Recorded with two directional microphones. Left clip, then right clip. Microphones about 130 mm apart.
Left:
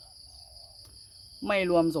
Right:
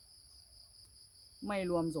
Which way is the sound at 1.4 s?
Centre (ahead or behind).